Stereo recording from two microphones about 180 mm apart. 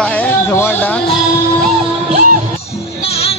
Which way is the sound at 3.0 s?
35° left (ahead or behind).